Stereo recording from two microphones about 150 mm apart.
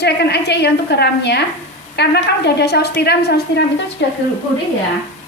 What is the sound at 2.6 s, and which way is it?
A woman's voice, 90° left.